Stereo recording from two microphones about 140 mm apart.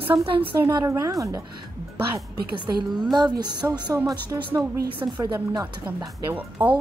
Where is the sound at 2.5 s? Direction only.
30° right (ahead or behind).